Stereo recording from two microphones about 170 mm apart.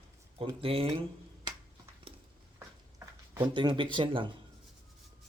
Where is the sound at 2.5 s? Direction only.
15° right (ahead or behind).